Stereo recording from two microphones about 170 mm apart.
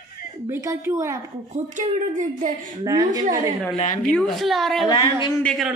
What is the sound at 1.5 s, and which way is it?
A woman's voice, 45° right (ahead or behind).